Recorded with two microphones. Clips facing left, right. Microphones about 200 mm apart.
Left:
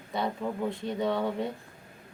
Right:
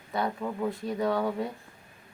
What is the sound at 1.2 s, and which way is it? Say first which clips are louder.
Speech: right 1 dB; 5° right (ahead or behind).